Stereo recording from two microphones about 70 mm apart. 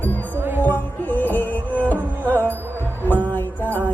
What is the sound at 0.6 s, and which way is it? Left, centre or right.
Music, left.